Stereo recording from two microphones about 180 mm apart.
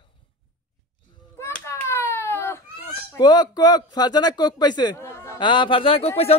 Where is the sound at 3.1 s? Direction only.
20° left (ahead or behind).